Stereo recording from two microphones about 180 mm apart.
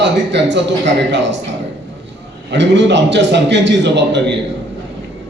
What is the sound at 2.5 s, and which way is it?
A man's voice, 75° right (ahead or behind).